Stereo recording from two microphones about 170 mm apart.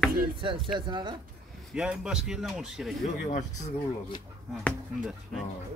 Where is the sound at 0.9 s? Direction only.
25° right (ahead or behind).